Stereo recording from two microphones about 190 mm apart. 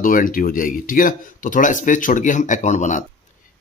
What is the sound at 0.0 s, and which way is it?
Speech, 45° left (ahead or behind).